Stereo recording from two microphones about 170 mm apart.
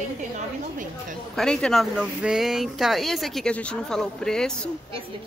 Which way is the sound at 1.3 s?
5° left (ahead or behind).